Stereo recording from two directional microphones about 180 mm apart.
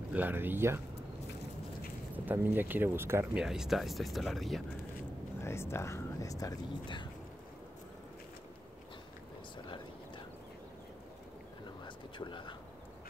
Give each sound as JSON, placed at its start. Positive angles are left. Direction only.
{"t": 0.1, "sound": "speech", "side_deg": -10}
{"t": 2.1, "sound": "speech", "side_deg": -10}
{"t": 3.3, "sound": "speech", "side_deg": -5}
{"t": 5.4, "sound": "speech", "side_deg": 15}
{"t": 11.8, "sound": "a sound", "side_deg": 25}